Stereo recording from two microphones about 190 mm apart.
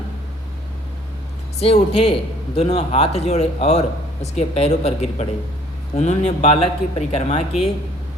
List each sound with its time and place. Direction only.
1.5 s speech: 30° left (ahead or behind)